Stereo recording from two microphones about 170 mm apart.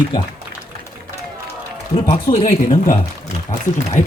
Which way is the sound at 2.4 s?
50° left (ahead or behind).